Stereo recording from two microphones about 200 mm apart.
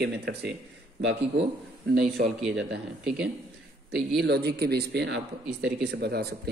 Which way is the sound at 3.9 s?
Centre (ahead or behind).